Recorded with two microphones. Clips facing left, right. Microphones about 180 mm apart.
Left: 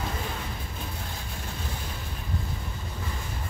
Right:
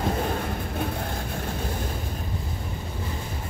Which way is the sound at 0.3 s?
55° right (ahead or behind).